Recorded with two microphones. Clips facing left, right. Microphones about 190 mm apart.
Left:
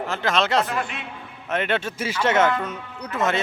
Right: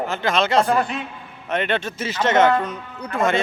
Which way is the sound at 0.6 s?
35° right (ahead or behind).